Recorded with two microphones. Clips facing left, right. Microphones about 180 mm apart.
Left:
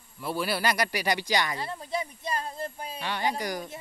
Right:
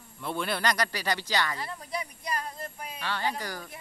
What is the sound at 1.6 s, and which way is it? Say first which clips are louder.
Speech: left 3 dB; 25° left (ahead or behind).